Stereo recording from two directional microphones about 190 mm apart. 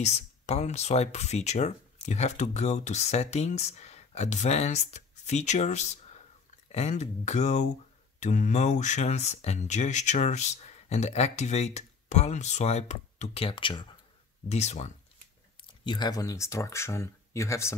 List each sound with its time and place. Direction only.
0.0 s speech: 35° left (ahead or behind)
14.5 s speech: 35° left (ahead or behind)
15.8 s speech: 25° left (ahead or behind)